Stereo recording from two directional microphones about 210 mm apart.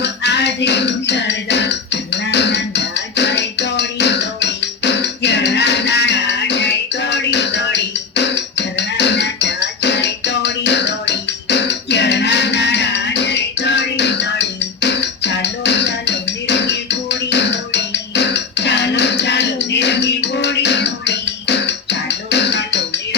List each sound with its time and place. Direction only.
0.0 s music: 55° left (ahead or behind)